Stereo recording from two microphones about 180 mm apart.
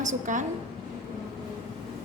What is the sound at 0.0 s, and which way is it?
Speech, 45° right (ahead or behind).